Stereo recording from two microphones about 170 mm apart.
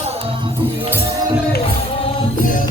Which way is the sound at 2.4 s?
50° left (ahead or behind).